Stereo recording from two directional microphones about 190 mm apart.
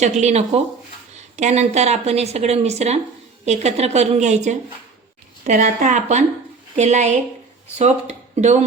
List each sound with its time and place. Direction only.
0.0 s speech: 35° right (ahead or behind)